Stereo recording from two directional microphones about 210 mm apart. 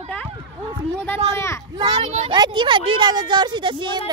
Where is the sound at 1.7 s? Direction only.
20° right (ahead or behind).